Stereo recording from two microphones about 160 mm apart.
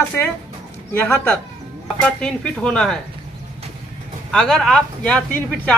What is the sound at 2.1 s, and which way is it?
Speech, 5° left (ahead or behind).